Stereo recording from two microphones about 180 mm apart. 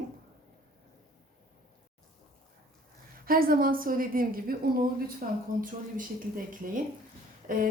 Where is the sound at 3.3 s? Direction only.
55° right (ahead or behind).